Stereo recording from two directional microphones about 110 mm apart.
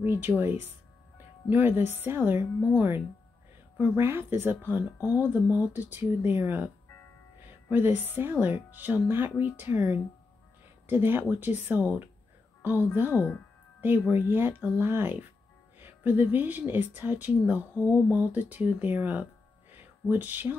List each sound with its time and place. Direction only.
0.0 s a woman's voice: 20° right (ahead or behind)
7.7 s speech: 15° right (ahead or behind)
13.1 s speech: 20° left (ahead or behind)
13.7 s a woman's voice: 15° right (ahead or behind)